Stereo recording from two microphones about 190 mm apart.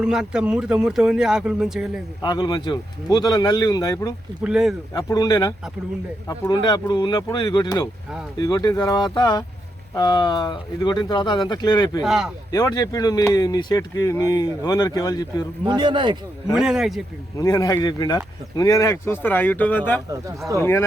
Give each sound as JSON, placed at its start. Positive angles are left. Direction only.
{"t": 0.0, "sound": "speech", "side_deg": -5}
{"t": 2.2, "sound": "speech", "side_deg": 25}
{"t": 4.4, "sound": "speech", "side_deg": -5}
{"t": 4.9, "sound": "speech", "side_deg": 20}
{"t": 12.0, "sound": "speech", "side_deg": 0}
{"t": 12.5, "sound": "speech", "side_deg": 20}
{"t": 15.6, "sound": "a man's voice", "side_deg": -25}
{"t": 16.6, "sound": "speech", "side_deg": -5}
{"t": 17.3, "sound": "speech", "side_deg": 20}